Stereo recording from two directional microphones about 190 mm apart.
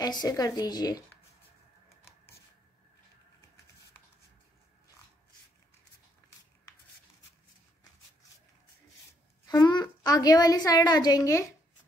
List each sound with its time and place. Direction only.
0.0 s a woman's voice: 20° left (ahead or behind)
9.5 s a woman's voice: 20° left (ahead or behind)